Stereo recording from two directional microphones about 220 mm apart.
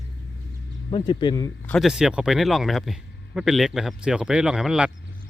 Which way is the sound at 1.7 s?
Centre (ahead or behind).